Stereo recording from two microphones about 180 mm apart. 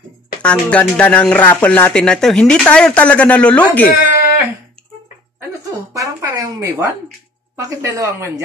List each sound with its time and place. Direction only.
0.4 s speech: 5° left (ahead or behind)
5.9 s a sound: 20° right (ahead or behind)
7.5 s speech: 15° right (ahead or behind)